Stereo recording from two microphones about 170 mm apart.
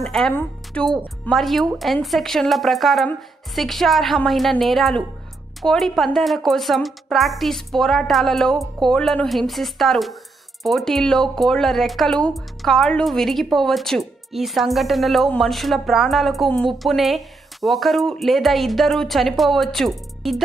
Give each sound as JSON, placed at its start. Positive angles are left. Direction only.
{"t": 0.0, "sound": "speech", "side_deg": 5}